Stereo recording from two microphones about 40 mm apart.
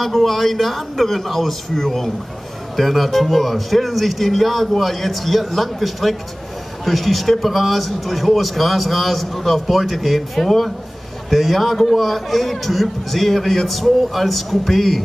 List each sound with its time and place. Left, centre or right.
0.0 s a man's voice: centre